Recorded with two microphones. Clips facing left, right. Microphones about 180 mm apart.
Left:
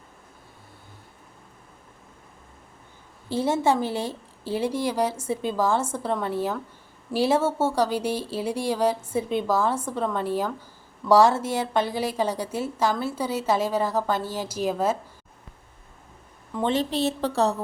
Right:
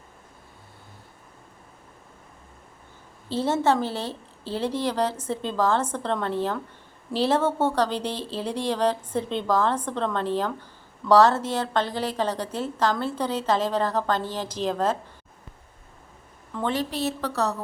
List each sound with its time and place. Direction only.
3.2 s a woman's voice: 10° left (ahead or behind)
16.5 s a woman's voice: 20° left (ahead or behind)